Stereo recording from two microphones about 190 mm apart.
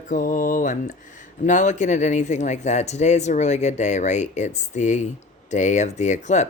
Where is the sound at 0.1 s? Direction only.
45° left (ahead or behind).